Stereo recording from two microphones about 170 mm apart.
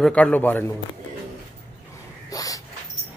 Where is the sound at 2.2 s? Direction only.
20° left (ahead or behind).